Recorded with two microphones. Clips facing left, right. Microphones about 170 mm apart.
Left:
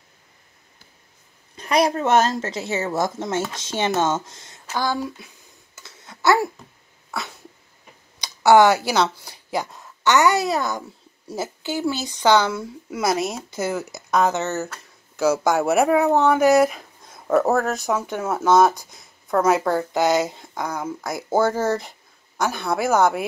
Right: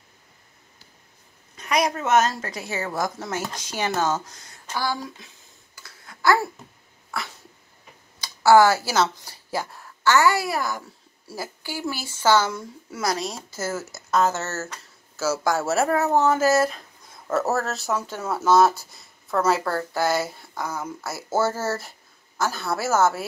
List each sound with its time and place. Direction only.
1.6 s a woman's voice: 30° left (ahead or behind)
5.8 s a sound: 20° left (ahead or behind)
8.2 s a sound: 20° left (ahead or behind)
9.1 s a child's voice: 15° left (ahead or behind)
13.6 s a woman's voice: 15° left (ahead or behind)
20.5 s speech: 5° right (ahead or behind)
21.1 s speech: 15° left (ahead or behind)
21.4 s speech: 5° right (ahead or behind)